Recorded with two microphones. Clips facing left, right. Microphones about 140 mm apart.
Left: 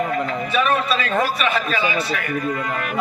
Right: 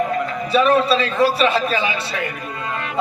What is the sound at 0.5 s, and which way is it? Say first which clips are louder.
A man's voice: right 6 dB; 35° right (ahead or behind).